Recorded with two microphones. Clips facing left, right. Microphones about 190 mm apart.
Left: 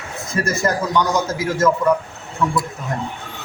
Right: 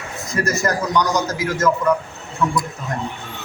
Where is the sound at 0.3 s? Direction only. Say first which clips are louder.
Even; 25° left (ahead or behind).